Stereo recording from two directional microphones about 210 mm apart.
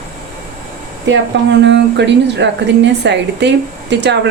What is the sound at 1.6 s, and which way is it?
A woman's voice, 55° right (ahead or behind).